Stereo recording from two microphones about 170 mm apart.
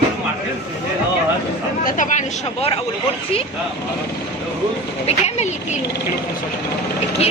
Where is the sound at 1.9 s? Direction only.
45° left (ahead or behind).